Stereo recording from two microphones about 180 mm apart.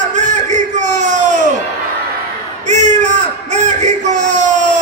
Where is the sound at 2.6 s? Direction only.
40° right (ahead or behind).